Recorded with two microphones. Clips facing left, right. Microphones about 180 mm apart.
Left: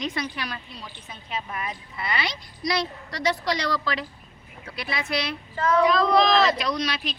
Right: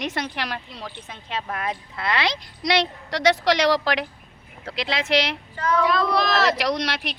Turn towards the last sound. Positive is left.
turn(degrees=-75)  # may be behind; listen again after turning